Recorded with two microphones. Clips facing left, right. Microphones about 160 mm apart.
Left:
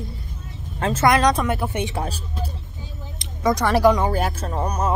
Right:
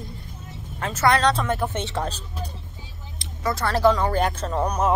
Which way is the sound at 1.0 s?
15° left (ahead or behind).